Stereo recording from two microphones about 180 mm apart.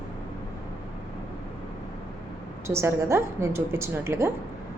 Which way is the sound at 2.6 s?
15° right (ahead or behind).